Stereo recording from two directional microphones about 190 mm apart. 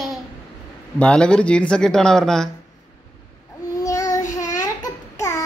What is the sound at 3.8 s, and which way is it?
Child singing, 15° left (ahead or behind).